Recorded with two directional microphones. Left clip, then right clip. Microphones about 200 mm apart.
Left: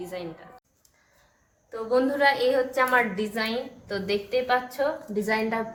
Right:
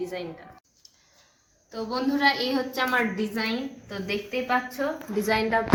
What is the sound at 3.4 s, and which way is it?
A woman's voice, 65° left (ahead or behind).